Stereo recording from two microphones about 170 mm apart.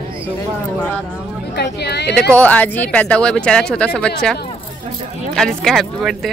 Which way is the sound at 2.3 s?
10° left (ahead or behind).